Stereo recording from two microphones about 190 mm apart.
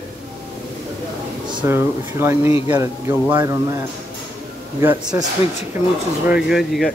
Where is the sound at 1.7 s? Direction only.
15° right (ahead or behind).